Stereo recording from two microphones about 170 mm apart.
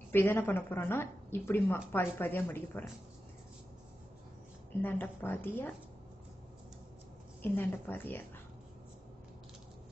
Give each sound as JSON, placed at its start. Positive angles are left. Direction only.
{"t": 0.1, "sound": "speech", "side_deg": 10}
{"t": 4.8, "sound": "speech", "side_deg": 10}
{"t": 7.4, "sound": "speech", "side_deg": 10}